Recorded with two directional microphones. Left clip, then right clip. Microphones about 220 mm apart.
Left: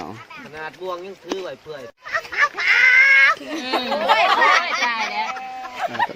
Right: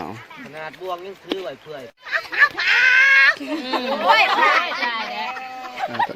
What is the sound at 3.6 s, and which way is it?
Speech, 45° left (ahead or behind).